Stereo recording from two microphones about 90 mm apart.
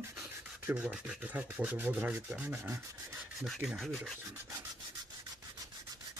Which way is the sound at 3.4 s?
Centre (ahead or behind).